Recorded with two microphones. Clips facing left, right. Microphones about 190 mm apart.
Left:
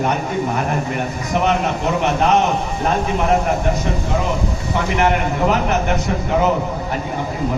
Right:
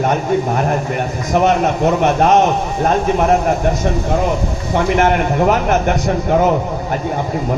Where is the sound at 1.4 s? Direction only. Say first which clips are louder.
Right 5 dB; 50° right (ahead or behind).